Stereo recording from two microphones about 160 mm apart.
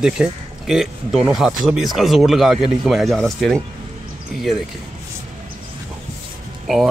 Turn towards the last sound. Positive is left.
turn(degrees=0)  # may be behind; listen again after turning